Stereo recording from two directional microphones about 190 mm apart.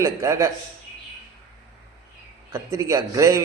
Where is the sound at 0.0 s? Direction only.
15° right (ahead or behind).